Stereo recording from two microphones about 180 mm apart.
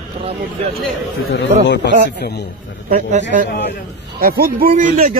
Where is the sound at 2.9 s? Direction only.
45° right (ahead or behind).